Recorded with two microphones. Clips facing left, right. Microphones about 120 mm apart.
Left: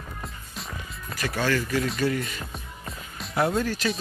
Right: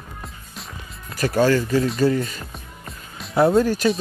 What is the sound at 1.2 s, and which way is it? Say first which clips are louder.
Speech: right 8 dB; 35° right (ahead or behind).